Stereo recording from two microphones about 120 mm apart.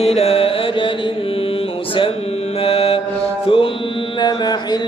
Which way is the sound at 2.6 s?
55° left (ahead or behind).